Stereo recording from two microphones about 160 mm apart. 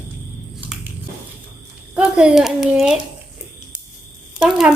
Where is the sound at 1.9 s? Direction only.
5° right (ahead or behind).